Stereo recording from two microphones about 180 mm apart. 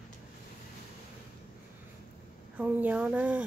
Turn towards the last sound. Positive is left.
turn(degrees=-10)  # may be behind; listen again after turning